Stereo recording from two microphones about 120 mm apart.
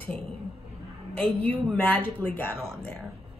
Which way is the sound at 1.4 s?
15° left (ahead or behind).